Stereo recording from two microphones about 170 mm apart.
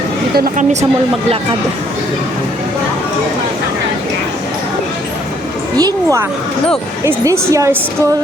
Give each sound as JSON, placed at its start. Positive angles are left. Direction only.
{"t": 0.3, "sound": "a woman's voice", "side_deg": -55}
{"t": 5.7, "sound": "a woman's voice", "side_deg": -20}